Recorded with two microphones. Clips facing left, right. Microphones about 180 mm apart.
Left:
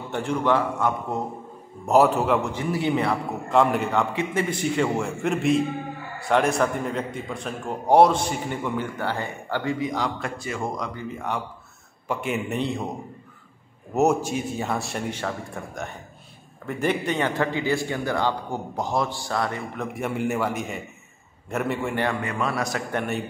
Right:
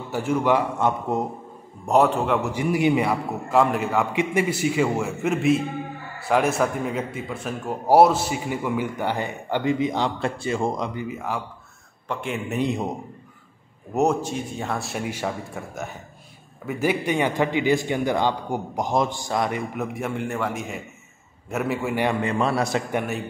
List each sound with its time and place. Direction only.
0.1 s a man's voice: 5° right (ahead or behind)
0.7 s a man's voice: 20° right (ahead or behind)
1.9 s a man's voice: 5° left (ahead or behind)
2.5 s a man's voice: 10° right (ahead or behind)
4.1 s a man's voice: 15° right (ahead or behind)
11.1 s a man's voice: 5° right (ahead or behind)
12.5 s a man's voice: 15° right (ahead or behind)
13.9 s a man's voice: 5° left (ahead or behind); by 19.9 s 15° right (ahead or behind)
19.9 s a man's voice: centre (ahead or behind)
22.0 s a man's voice: 25° right (ahead or behind)